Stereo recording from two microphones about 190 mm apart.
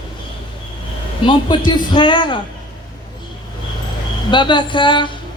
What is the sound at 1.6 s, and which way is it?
Speech, 25° left (ahead or behind).